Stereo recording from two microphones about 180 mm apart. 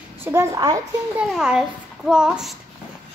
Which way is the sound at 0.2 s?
15° right (ahead or behind).